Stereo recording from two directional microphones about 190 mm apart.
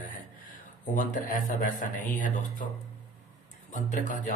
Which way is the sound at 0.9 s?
45° left (ahead or behind).